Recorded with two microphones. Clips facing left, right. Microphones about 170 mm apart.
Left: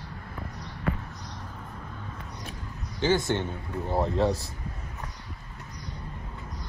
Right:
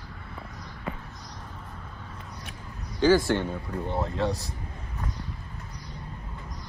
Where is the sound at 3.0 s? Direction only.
25° left (ahead or behind).